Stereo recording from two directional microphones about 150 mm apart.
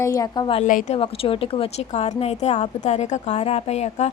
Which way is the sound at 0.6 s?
60° left (ahead or behind).